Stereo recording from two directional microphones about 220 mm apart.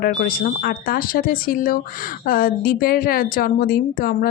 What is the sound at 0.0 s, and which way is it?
A woman's voice, 40° left (ahead or behind).